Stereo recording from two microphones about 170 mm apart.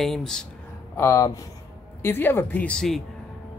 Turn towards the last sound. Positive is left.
turn(degrees=0)  # may be behind; listen again after turning